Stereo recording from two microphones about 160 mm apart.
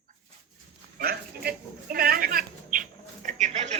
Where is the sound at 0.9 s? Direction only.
70° right (ahead or behind).